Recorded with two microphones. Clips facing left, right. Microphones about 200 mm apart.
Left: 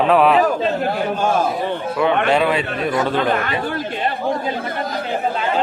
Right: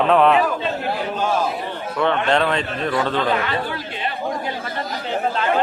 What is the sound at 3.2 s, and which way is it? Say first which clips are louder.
Speech: left 2 dB; 50° left (ahead or behind).